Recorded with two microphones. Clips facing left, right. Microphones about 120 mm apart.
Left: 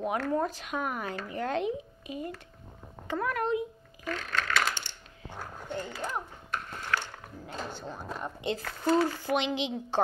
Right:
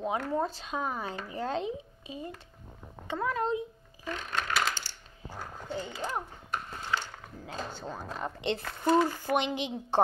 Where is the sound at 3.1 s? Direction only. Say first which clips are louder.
Left 1 dB; 20° right (ahead or behind).